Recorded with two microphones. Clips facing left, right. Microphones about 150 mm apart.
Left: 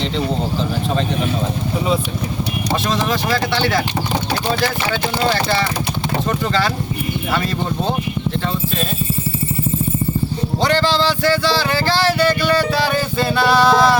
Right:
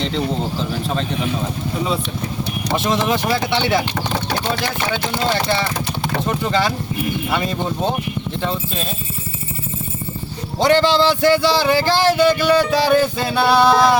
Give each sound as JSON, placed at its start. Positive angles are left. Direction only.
{"t": 3.1, "sound": "speech", "side_deg": -20}
{"t": 10.6, "sound": "speech", "side_deg": -20}